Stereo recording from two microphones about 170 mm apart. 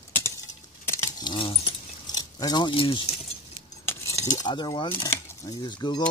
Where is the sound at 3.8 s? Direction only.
15° left (ahead or behind).